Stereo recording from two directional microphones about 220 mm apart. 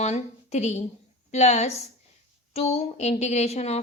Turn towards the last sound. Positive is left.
turn(degrees=30)  # may be behind; listen again after turning